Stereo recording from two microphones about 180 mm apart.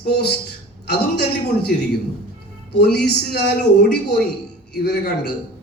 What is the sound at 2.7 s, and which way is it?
A man's voice, 65° left (ahead or behind).